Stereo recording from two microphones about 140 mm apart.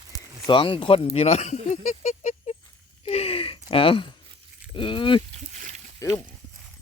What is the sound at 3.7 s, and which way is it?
Speech, 40° left (ahead or behind).